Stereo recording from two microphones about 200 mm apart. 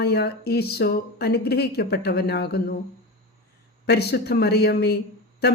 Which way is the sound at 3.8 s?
55° left (ahead or behind).